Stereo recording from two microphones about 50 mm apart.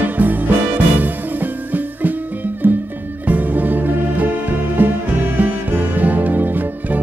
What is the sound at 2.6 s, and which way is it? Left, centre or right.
Music, right.